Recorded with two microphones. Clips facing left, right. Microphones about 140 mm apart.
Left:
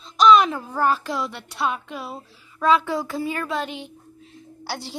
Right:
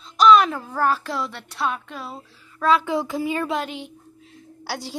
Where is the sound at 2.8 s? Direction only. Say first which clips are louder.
Right 2 dB; 15° right (ahead or behind).